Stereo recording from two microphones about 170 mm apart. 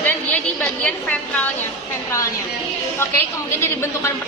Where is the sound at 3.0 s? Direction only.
15° left (ahead or behind).